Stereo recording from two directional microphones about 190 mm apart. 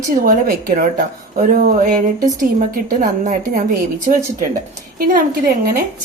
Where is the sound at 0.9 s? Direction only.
50° right (ahead or behind).